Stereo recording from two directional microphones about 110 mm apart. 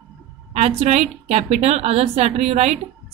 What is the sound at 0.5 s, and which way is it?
A woman's voice, 75° right (ahead or behind).